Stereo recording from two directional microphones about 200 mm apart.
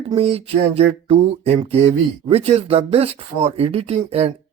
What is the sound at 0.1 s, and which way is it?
A man's voice, 30° right (ahead or behind).